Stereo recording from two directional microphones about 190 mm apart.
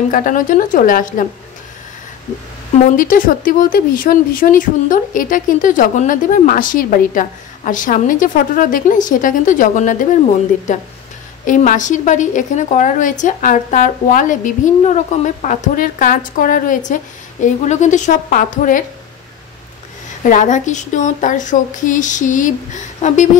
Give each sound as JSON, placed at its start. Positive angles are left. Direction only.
{"t": 0.1, "sound": "speech", "side_deg": 45}
{"t": 3.0, "sound": "speech", "side_deg": 45}
{"t": 11.4, "sound": "a woman's voice", "side_deg": 45}
{"t": 20.2, "sound": "a woman's voice", "side_deg": 40}